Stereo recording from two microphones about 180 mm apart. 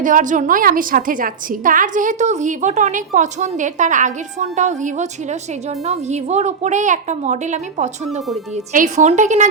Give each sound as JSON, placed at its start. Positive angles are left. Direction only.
{"t": 0.0, "sound": "a woman's voice", "side_deg": -45}